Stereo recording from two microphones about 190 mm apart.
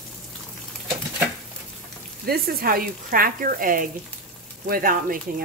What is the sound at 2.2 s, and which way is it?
Speech, 50° right (ahead or behind).